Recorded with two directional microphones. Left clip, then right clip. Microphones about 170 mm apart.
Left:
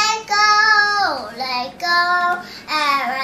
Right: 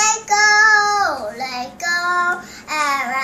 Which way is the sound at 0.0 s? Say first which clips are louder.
Right 1 dB; 15° right (ahead or behind).